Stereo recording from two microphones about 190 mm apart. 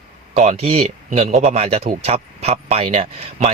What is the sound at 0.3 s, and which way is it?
A man's voice, 35° right (ahead or behind).